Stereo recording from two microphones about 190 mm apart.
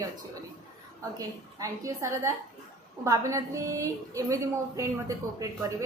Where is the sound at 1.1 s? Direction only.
15° right (ahead or behind).